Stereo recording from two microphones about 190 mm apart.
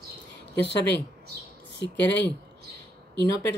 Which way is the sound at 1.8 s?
65° left (ahead or behind).